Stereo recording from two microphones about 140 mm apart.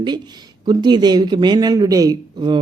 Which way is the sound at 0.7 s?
30° right (ahead or behind).